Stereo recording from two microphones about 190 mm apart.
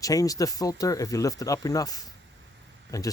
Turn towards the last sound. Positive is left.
turn(degrees=20)  # may be behind; listen again after turning